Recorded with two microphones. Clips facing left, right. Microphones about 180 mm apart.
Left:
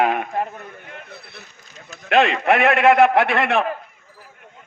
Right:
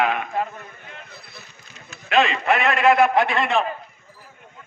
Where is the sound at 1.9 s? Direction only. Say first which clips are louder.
Left 3 dB; 60° left (ahead or behind).